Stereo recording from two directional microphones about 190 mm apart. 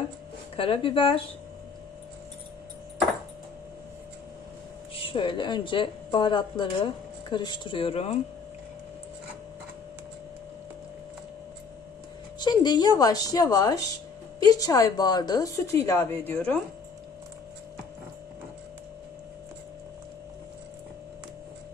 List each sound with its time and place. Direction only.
0.6 s a woman's voice: 30° left (ahead or behind)
5.0 s a woman's voice: 25° left (ahead or behind)
12.4 s a woman's voice: 25° left (ahead or behind)